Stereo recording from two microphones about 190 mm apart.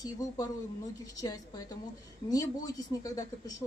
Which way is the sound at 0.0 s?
20° left (ahead or behind).